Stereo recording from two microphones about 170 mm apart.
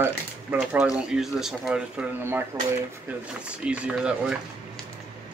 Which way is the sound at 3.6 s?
5° right (ahead or behind).